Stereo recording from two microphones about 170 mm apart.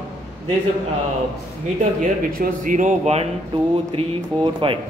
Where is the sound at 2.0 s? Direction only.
55° right (ahead or behind).